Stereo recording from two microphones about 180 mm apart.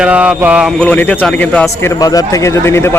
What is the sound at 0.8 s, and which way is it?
Speech, 5° left (ahead or behind).